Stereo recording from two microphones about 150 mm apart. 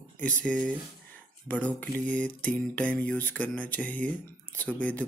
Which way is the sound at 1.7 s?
10° left (ahead or behind).